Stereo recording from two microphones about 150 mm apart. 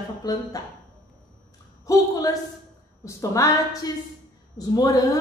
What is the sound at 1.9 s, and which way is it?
Speech, 20° left (ahead or behind).